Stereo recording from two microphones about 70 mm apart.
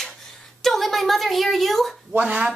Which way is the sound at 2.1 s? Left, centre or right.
Centre.